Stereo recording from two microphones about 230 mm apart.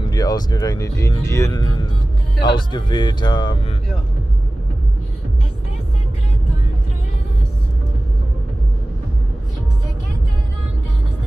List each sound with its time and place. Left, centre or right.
0.1 s speech: centre